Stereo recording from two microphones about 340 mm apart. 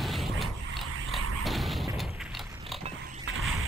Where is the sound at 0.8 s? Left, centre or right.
Right.